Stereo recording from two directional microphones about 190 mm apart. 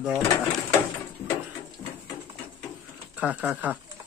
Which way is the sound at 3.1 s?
10° right (ahead or behind).